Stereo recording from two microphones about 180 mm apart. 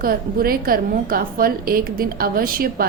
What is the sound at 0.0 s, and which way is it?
Speech, 55° right (ahead or behind).